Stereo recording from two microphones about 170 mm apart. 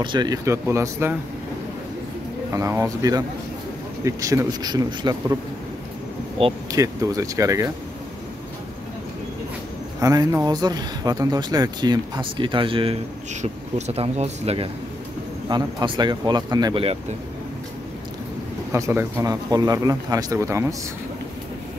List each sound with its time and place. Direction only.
0.0 s speech: 25° right (ahead or behind)
2.5 s speech: 15° right (ahead or behind)
6.7 s speech: 20° right (ahead or behind)
9.9 s speech: 20° right (ahead or behind)
13.3 s speech: 45° right (ahead or behind)
15.4 s speech: 25° right (ahead or behind)
18.7 s speech: 15° right (ahead or behind)